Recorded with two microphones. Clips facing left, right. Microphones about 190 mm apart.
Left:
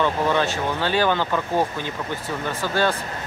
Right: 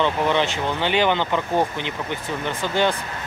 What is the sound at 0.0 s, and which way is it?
Speech, 20° right (ahead or behind).